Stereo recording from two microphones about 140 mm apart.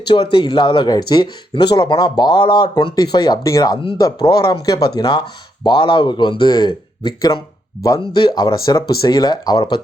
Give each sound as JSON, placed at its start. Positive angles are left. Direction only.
{"t": 0.1, "sound": "speech", "side_deg": 35}
{"t": 8.5, "sound": "speech", "side_deg": 25}